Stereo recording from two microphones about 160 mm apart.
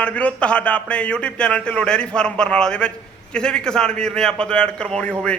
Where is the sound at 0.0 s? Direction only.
10° left (ahead or behind).